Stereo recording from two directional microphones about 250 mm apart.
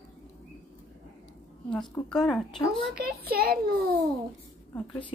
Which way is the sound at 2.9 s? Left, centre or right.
Right.